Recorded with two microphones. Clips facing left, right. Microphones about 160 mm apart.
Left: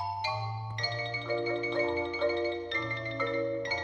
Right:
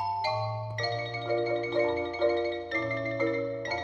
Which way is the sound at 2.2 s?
45° right (ahead or behind).